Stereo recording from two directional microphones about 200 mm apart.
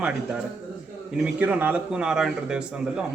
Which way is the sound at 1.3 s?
5° right (ahead or behind).